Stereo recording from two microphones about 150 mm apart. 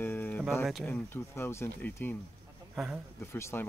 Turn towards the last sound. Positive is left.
turn(degrees=15)  # may be behind; listen again after turning